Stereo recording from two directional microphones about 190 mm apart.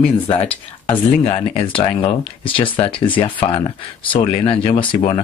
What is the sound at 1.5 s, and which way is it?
Speech, 30° left (ahead or behind).